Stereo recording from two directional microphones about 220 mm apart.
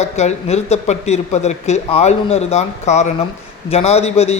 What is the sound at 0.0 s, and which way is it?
A man's voice, 30° left (ahead or behind).